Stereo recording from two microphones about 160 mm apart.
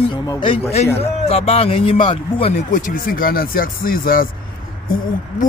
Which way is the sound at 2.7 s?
55° left (ahead or behind).